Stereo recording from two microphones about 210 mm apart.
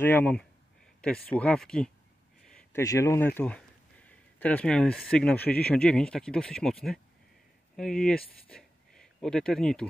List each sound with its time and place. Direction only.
0.0 s speech: 10° left (ahead or behind)
2.4 s a sound: 5° left (ahead or behind)
2.8 s speech: 15° left (ahead or behind)